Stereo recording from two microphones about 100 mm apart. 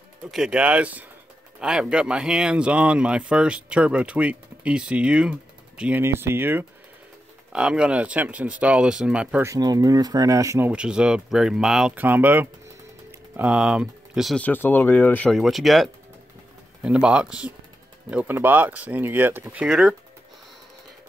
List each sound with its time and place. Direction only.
0.3 s speech: 5° right (ahead or behind)
6.0 s speech: 25° right (ahead or behind)
7.5 s speech: 10° right (ahead or behind)
9.6 s speech: 40° right (ahead or behind)
10.7 s speech: 10° right (ahead or behind)
11.9 s speech: 15° right (ahead or behind)
14.3 s speech: 15° left (ahead or behind)
15.3 s speech: centre (ahead or behind); by 19.6 s 20° right (ahead or behind)
19.6 s speech: 5° right (ahead or behind)